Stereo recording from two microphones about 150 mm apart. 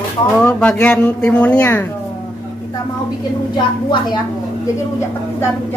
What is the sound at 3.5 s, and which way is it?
Speech, 30° left (ahead or behind).